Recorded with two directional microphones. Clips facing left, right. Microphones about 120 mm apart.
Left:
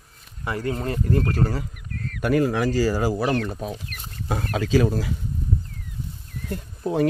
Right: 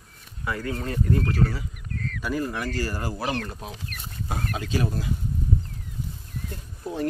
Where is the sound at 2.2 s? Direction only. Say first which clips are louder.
Left 8 dB; 70° left (ahead or behind); by 3.1 s 90° left.